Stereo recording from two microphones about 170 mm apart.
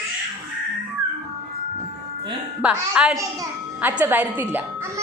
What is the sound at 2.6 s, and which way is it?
Speech, 5° right (ahead or behind).